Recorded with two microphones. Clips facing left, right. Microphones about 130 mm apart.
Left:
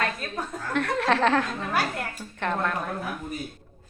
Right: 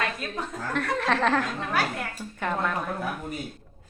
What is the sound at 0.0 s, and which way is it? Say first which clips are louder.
A woman's voice: left 1 dB; centre (ahead or behind).